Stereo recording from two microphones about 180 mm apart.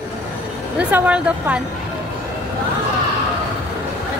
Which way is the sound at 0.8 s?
10° right (ahead or behind).